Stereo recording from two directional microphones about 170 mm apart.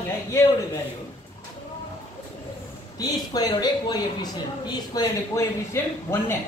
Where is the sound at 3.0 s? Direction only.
25° left (ahead or behind).